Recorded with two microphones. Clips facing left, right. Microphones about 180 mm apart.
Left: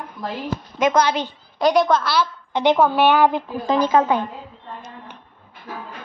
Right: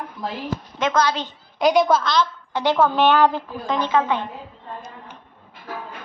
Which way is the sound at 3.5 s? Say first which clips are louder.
Left 4 dB; 35° left (ahead or behind).